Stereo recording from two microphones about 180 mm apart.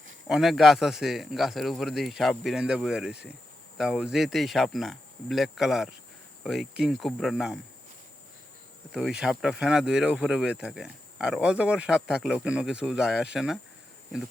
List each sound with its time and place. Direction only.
0.3 s speech: centre (ahead or behind)
8.9 s speech: centre (ahead or behind)